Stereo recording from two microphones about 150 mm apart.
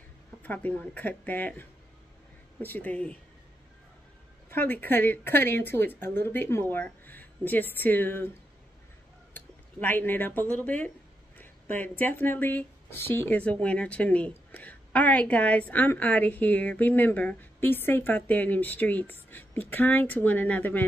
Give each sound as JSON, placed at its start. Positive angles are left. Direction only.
{"t": 0.4, "sound": "speech", "side_deg": 10}
{"t": 4.5, "sound": "speech", "side_deg": 15}
{"t": 9.3, "sound": "a sound", "side_deg": 10}
{"t": 10.5, "sound": "speech", "side_deg": 10}